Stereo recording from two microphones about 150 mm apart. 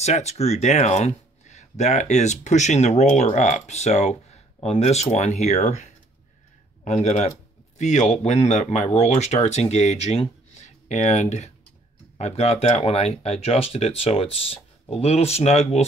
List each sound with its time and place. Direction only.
0.0 s speech: 45° left (ahead or behind)